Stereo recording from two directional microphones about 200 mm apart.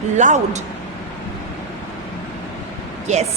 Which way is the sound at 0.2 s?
40° right (ahead or behind).